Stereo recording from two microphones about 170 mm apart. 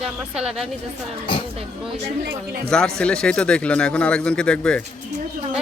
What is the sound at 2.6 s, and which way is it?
Speech, 5° left (ahead or behind).